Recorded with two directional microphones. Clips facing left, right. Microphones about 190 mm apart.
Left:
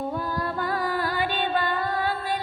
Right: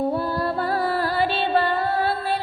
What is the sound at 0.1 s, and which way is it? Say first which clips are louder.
Music: right 5 dB; 35° right (ahead or behind).